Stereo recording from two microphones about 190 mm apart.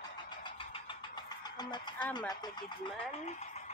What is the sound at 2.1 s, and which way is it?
Speech, 20° left (ahead or behind).